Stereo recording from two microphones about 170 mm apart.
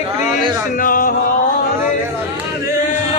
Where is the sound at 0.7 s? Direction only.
55° left (ahead or behind).